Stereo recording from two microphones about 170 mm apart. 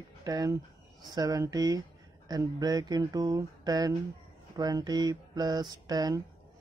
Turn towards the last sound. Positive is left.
turn(degrees=-20)  # may be behind; listen again after turning